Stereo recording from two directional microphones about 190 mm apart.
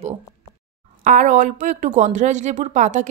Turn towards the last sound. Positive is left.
turn(degrees=-40)  # may be behind; listen again after turning